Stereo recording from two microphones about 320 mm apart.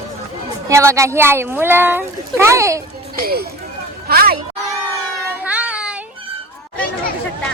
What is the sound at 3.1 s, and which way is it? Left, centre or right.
Speech, right.